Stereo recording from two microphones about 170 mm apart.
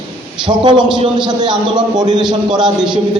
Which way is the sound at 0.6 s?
25° right (ahead or behind).